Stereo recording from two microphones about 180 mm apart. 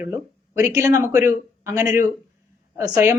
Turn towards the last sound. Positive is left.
turn(degrees=-15)  # may be behind; listen again after turning